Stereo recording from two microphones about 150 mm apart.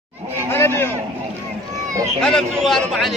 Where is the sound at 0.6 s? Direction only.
15° left (ahead or behind).